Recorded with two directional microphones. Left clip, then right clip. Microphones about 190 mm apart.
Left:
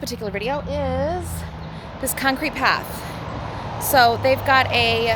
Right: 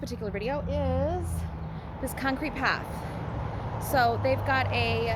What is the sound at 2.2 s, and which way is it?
Speech, 20° left (ahead or behind).